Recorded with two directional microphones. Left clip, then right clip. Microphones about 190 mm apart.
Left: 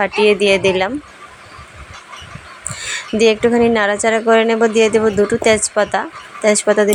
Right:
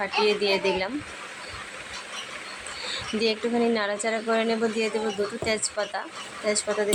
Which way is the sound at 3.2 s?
35° left (ahead or behind).